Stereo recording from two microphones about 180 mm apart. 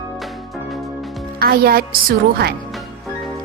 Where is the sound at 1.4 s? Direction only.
55° right (ahead or behind).